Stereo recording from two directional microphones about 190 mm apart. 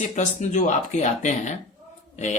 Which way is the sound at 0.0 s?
40° left (ahead or behind).